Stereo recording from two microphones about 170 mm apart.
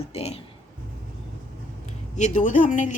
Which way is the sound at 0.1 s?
40° left (ahead or behind).